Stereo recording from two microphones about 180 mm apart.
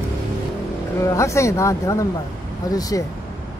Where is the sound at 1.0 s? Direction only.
15° left (ahead or behind).